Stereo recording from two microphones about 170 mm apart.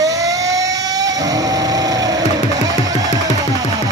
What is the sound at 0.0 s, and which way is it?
Train, 20° right (ahead or behind).